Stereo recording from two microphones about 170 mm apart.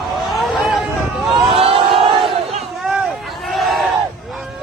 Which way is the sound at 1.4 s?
35° right (ahead or behind).